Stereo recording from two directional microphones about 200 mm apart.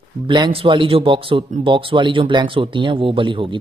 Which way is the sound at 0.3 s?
25° right (ahead or behind).